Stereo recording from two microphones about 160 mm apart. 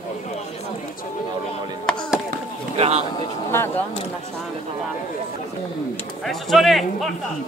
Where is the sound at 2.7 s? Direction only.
35° right (ahead or behind).